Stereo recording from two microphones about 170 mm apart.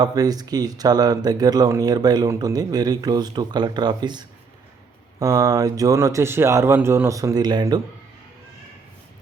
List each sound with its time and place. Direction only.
0.0 s speech: 20° right (ahead or behind)